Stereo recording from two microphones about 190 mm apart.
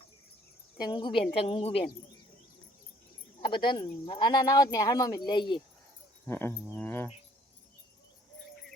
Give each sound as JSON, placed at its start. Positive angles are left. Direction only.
{"t": 0.8, "sound": "speech", "side_deg": 25}
{"t": 3.5, "sound": "speech", "side_deg": 25}
{"t": 6.2, "sound": "insect", "side_deg": 10}